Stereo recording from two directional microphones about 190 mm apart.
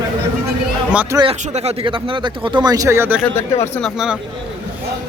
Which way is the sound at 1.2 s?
30° right (ahead or behind).